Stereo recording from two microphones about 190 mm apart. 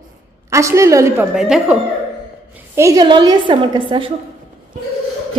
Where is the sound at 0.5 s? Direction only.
15° right (ahead or behind).